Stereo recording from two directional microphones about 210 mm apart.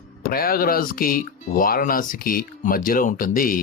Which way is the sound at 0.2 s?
45° left (ahead or behind).